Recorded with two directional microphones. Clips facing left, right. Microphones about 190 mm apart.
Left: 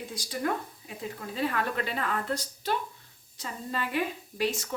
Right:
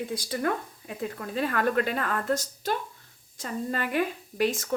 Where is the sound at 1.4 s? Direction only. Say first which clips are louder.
Right 5 dB; 50° right (ahead or behind).